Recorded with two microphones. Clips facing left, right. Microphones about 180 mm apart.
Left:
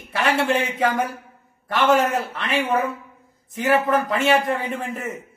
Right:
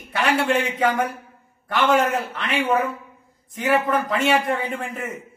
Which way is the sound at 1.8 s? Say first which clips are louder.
Left 1 dB; centre (ahead or behind).